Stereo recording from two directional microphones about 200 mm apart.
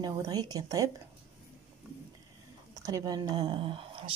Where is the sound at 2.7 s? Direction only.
20° right (ahead or behind).